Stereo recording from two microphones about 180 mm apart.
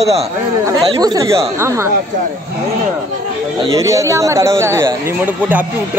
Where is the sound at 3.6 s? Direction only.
20° right (ahead or behind).